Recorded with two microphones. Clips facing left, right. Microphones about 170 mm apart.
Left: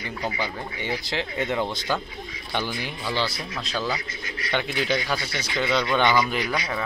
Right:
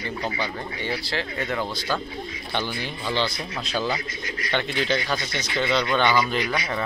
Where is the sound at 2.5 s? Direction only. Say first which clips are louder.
Even; 10° left (ahead or behind).